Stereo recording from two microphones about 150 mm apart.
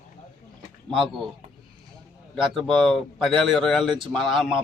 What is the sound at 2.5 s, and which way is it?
A man's voice, centre (ahead or behind).